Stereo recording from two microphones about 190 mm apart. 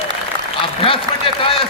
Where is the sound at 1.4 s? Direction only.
30° left (ahead or behind).